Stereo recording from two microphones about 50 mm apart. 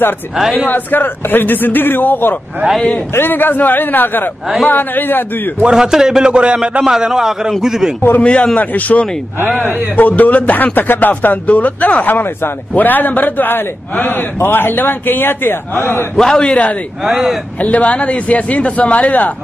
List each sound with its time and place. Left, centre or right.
0.7 s speech: left
5.6 s a man's voice: centre
6.8 s a man's voice: centre
8.2 s a man's voice: left
16.2 s a man's voice: centre
17.0 s a man's voice: centre
17.6 s a man's voice: left